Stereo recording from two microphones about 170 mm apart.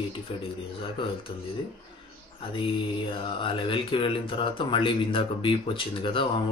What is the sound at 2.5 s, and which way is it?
Mantra, 30° left (ahead or behind).